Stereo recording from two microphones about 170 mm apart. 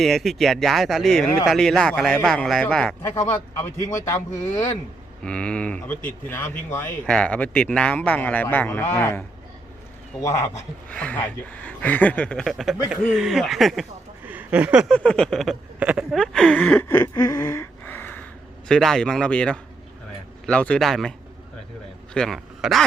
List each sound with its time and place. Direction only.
0.0 s speech: centre (ahead or behind)
5.2 s speech: 5° left (ahead or behind)
10.8 s speech: 5° left (ahead or behind)
14.3 s a sound: 10° right (ahead or behind)
14.9 s speech: 5° left (ahead or behind)
17.2 s a sound: 20° left (ahead or behind)
18.7 s speech: 5° left (ahead or behind)
22.1 s speech: 5° left (ahead or behind)